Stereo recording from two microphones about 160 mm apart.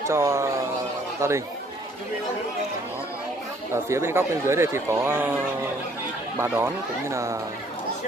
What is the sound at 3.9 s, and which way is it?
Speech, 15° right (ahead or behind).